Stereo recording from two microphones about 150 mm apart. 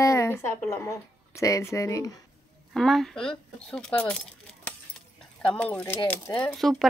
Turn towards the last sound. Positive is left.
turn(degrees=0)  # may be behind; listen again after turning